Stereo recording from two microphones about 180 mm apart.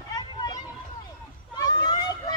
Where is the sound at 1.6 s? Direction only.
20° left (ahead or behind).